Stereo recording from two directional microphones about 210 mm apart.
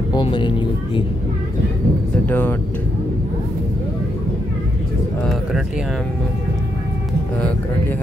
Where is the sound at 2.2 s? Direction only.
10° left (ahead or behind).